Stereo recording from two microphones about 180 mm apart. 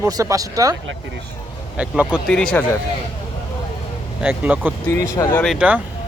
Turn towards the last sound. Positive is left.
turn(degrees=-10)  # may be behind; listen again after turning